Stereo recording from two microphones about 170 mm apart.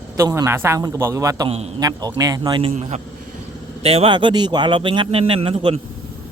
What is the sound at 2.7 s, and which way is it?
A man's voice, 40° right (ahead or behind).